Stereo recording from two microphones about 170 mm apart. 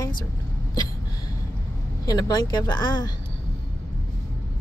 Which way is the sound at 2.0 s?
20° left (ahead or behind).